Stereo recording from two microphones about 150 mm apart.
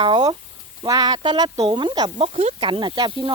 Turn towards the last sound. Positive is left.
turn(degrees=-30)  # may be behind; listen again after turning